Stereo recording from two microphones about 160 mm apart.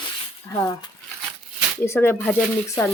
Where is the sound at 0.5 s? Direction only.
25° left (ahead or behind).